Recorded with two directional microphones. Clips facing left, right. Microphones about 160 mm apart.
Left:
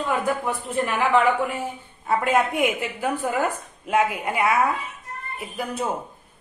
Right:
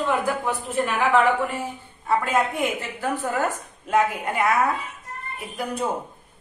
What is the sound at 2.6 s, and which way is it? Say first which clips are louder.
A woman's voice: left 2 dB; 15° left (ahead or behind).